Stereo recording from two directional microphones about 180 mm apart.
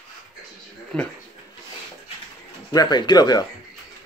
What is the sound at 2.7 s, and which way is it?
Speech, 25° left (ahead or behind).